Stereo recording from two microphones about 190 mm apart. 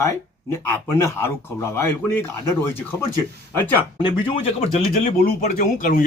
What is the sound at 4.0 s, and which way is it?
Speech, 25° left (ahead or behind).